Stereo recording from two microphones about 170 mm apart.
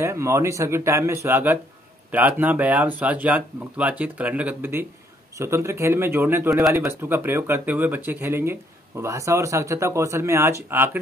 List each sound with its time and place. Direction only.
0.0 s speech: 15° right (ahead or behind)